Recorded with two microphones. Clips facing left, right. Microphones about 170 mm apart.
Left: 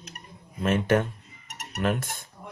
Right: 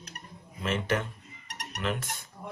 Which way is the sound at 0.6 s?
50° left (ahead or behind).